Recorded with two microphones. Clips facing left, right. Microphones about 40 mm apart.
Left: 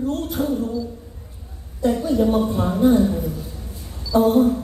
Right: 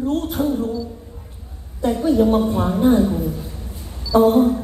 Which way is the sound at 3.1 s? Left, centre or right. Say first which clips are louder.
Right 2 dB; centre.